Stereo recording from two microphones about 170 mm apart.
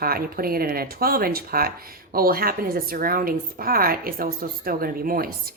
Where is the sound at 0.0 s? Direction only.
60° right (ahead or behind).